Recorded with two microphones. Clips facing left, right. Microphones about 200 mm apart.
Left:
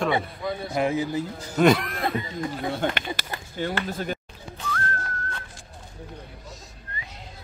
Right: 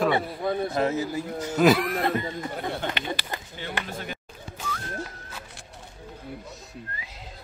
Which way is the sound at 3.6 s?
45° left (ahead or behind).